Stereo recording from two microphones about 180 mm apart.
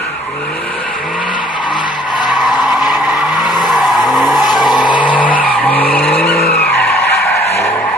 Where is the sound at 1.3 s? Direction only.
25° left (ahead or behind).